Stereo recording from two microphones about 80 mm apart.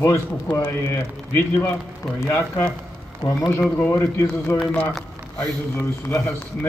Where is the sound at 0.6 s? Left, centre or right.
Left.